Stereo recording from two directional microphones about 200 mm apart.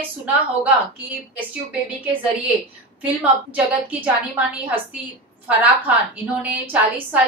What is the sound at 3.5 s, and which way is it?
A woman's voice, 5° right (ahead or behind).